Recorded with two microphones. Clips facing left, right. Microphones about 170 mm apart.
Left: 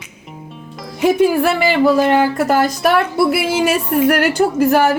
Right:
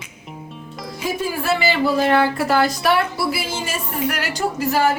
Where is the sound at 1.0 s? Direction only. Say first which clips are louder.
Left 10 dB; 60° left (ahead or behind).